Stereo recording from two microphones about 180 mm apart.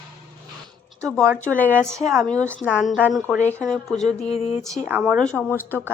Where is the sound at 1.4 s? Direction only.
10° left (ahead or behind).